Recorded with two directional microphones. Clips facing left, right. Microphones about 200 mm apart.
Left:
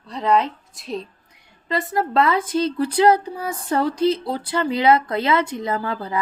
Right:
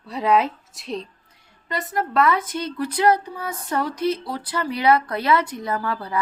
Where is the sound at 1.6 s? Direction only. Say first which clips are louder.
Left 3 dB; 25° left (ahead or behind).